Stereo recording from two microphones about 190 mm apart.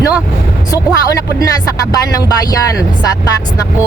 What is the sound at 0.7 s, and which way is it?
Speech, 15° left (ahead or behind).